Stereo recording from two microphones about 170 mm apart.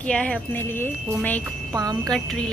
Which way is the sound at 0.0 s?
5° left (ahead or behind).